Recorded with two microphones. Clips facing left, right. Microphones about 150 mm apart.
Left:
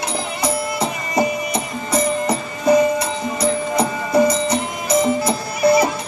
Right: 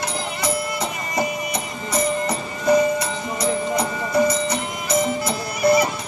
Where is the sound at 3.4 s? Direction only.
30° left (ahead or behind).